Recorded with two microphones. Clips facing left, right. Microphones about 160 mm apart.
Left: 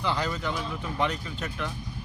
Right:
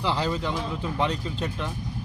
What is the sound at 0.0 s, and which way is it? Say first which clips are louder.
A man's voice: right 3 dB; 30° right (ahead or behind).